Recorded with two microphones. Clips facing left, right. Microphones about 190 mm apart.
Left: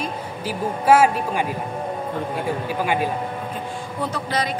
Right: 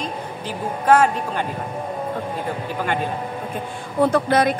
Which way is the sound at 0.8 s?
10° left (ahead or behind).